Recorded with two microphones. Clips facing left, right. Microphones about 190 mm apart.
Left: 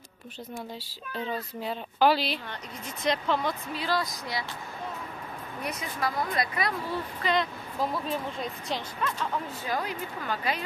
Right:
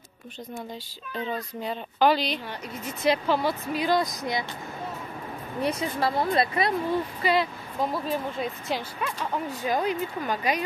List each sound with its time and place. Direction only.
1.1 s speech: centre (ahead or behind)
3.0 s speech: 5° right (ahead or behind)
3.8 s speech: 20° right (ahead or behind)
5.6 s speech: 30° right (ahead or behind)
7.2 s speech: 5° right (ahead or behind)